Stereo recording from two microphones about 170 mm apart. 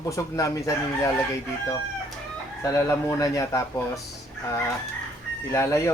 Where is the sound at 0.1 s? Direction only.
20° left (ahead or behind).